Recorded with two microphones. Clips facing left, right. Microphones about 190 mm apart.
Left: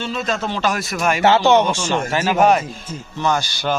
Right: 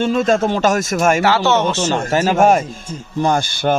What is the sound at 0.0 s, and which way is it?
A man's voice, 50° right (ahead or behind).